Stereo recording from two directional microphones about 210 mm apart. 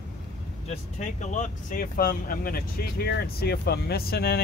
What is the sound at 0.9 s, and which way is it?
Speech, 35° left (ahead or behind).